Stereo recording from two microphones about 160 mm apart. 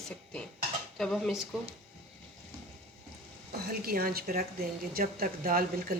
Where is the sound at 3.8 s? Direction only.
70° right (ahead or behind).